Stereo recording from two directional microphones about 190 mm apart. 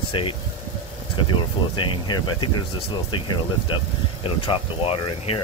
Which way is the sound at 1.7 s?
25° left (ahead or behind).